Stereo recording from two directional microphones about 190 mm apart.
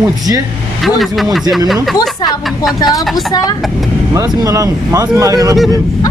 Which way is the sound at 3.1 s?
20° left (ahead or behind).